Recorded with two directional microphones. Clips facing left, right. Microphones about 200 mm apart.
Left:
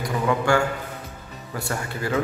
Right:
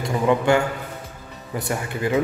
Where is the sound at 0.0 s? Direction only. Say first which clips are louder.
Right 3 dB; 25° right (ahead or behind).